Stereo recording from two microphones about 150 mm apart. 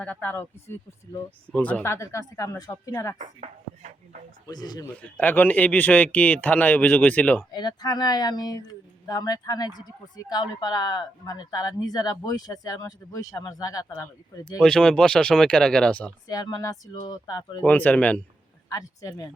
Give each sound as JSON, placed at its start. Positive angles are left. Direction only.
{"t": 0.0, "sound": "speech", "side_deg": 10}
{"t": 3.2, "sound": "speech", "side_deg": -55}
{"t": 4.4, "sound": "speech", "side_deg": 25}
{"t": 5.0, "sound": "speech", "side_deg": 10}
{"t": 7.5, "sound": "speech", "side_deg": 25}
{"t": 14.6, "sound": "speech", "side_deg": 5}
{"t": 16.3, "sound": "speech", "side_deg": 25}
{"t": 17.6, "sound": "speech", "side_deg": 10}
{"t": 18.7, "sound": "speech", "side_deg": 20}